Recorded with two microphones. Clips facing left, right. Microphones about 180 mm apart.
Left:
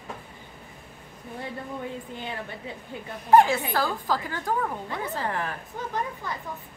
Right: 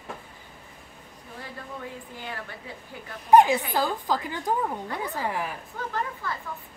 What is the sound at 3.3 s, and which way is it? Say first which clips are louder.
A woman's voice: right 1 dB; 20° right (ahead or behind).